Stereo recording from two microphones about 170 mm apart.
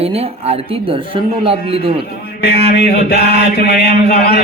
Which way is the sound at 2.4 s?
65° left (ahead or behind).